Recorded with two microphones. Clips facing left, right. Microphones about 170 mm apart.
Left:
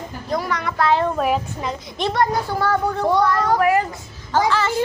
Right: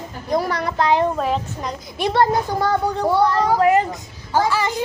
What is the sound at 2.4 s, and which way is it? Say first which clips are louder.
A child's voice: right 1 dB; 15° right (ahead or behind).